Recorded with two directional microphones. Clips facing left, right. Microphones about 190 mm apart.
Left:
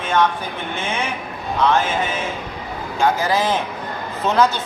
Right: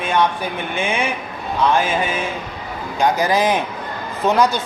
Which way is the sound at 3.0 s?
15° right (ahead or behind).